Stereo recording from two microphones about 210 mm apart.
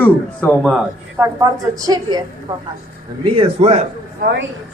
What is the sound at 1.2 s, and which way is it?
A woman's voice, 15° right (ahead or behind).